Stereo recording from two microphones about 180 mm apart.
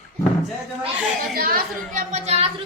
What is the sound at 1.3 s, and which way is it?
A child's voice, 55° right (ahead or behind).